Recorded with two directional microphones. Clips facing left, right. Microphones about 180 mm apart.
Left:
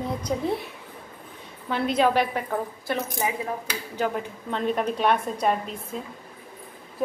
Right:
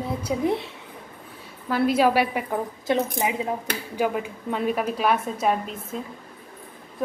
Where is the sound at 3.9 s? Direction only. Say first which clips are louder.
Right 2 dB; 10° right (ahead or behind).